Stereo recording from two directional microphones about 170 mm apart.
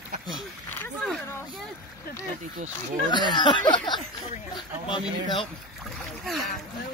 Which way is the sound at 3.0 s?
25° left (ahead or behind).